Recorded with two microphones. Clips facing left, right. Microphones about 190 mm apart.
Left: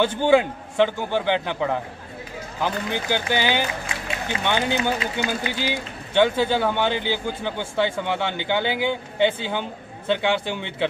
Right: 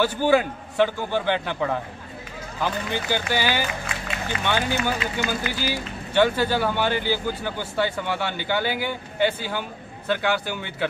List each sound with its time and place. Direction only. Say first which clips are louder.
0.0 s a man's voice: left 2 dB; 20° left (ahead or behind)